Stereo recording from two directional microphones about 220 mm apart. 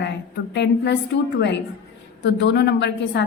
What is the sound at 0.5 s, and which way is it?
A woman's voice, 55° left (ahead or behind).